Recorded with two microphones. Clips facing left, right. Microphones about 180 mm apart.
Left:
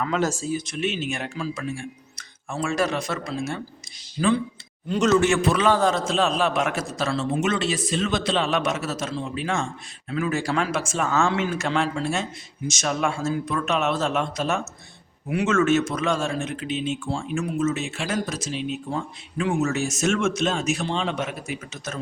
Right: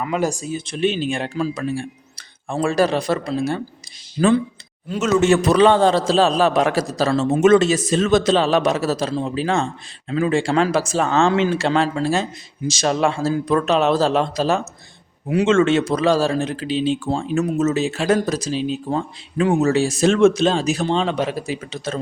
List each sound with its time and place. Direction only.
0.0 s speech: 15° right (ahead or behind)
0.5 s a man's voice: 30° right (ahead or behind)
4.2 s speech: 50° right (ahead or behind)
4.9 s a man's voice: 5° right (ahead or behind)
5.3 s a man's voice: 35° right (ahead or behind)